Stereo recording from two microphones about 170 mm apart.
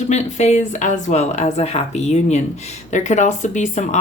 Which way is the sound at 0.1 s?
40° left (ahead or behind).